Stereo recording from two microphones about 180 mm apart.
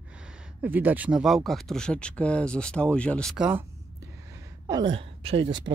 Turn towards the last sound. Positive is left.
turn(degrees=-25)  # may be behind; listen again after turning